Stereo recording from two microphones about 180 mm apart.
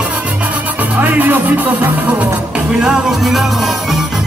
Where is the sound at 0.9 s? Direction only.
10° right (ahead or behind).